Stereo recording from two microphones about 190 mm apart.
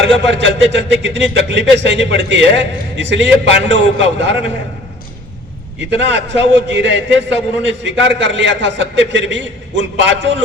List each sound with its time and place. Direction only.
0.0 s a man's voice: 70° right (ahead or behind)
5.9 s a man's voice: 70° right (ahead or behind)